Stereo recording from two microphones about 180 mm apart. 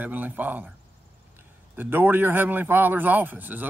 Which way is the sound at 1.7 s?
10° right (ahead or behind).